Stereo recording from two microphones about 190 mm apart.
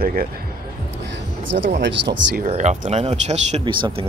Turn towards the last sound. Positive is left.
turn(degrees=-25)  # may be behind; listen again after turning